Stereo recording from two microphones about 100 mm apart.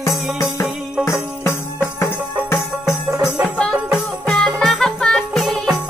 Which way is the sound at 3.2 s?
Centre (ahead or behind).